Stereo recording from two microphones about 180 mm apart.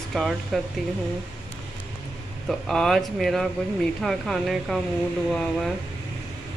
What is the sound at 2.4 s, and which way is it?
Speech, centre (ahead or behind).